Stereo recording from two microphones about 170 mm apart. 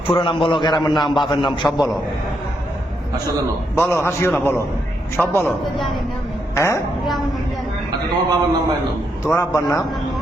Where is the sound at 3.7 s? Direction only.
15° left (ahead or behind).